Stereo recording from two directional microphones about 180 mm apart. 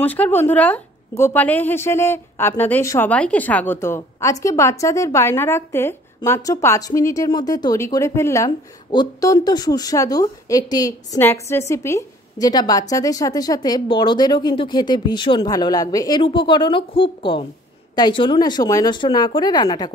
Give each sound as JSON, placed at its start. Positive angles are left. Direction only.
{"t": 0.0, "sound": "a woman's voice", "side_deg": 10}